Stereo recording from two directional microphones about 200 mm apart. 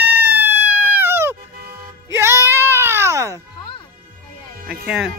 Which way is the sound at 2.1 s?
15° right (ahead or behind).